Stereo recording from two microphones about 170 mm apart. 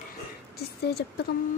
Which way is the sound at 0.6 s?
70° left (ahead or behind).